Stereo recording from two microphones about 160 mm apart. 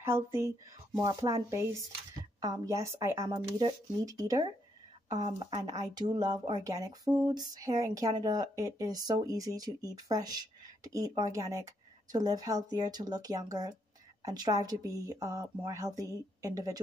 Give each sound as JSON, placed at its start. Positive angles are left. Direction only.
{"t": 0.0, "sound": "speech", "side_deg": -15}
{"t": 5.5, "sound": "a woman's voice", "side_deg": -25}